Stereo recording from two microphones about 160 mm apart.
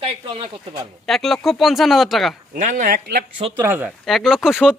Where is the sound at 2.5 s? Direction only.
55° right (ahead or behind).